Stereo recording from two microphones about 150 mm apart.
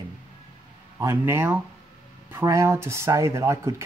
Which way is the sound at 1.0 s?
15° right (ahead or behind).